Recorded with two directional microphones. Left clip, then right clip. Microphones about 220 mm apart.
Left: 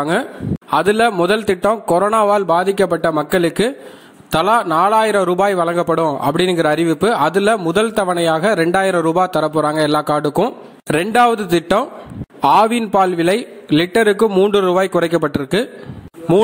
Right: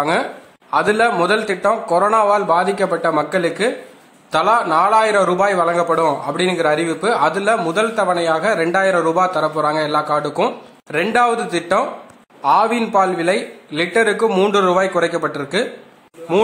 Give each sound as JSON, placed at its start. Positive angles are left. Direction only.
{"t": 0.7, "sound": "a man's voice", "side_deg": 35}